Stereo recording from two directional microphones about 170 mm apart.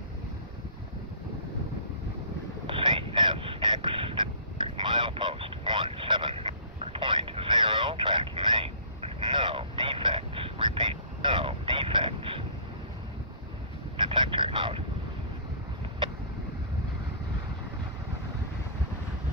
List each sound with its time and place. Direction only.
2.6 s vehicle: 30° right (ahead or behind)
13.9 s vehicle: 30° right (ahead or behind)